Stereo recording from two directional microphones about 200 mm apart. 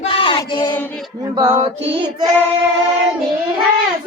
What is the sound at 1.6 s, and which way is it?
Female singing, 25° right (ahead or behind).